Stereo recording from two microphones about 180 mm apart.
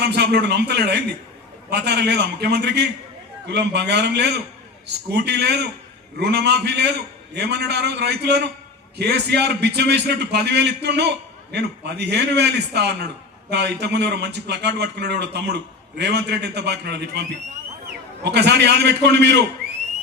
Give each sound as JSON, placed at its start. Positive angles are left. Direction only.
{"t": 0.1, "sound": "speech", "side_deg": -70}